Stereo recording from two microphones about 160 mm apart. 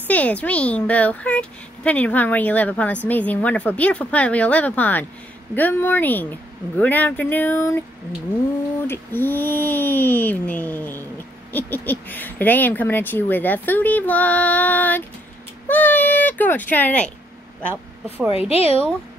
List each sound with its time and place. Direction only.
0.1 s speech: 10° left (ahead or behind)
8.8 s speech: 15° left (ahead or behind)
17.6 s speech: 15° right (ahead or behind)
18.3 s a woman's voice: 40° left (ahead or behind)